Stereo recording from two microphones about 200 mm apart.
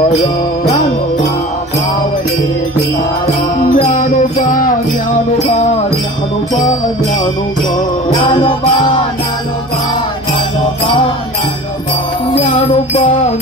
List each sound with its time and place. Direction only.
0.1 s music: 35° left (ahead or behind)
3.7 s music: 40° left (ahead or behind)
8.1 s music: 25° left (ahead or behind)
12.4 s music: 30° left (ahead or behind)